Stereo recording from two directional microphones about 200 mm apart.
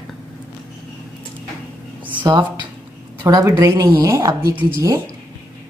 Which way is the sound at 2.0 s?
20° right (ahead or behind).